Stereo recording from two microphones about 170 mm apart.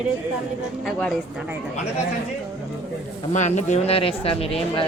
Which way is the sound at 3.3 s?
45° left (ahead or behind).